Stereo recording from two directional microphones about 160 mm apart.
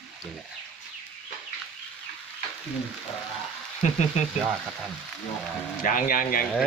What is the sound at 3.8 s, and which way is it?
Speech, 45° left (ahead or behind).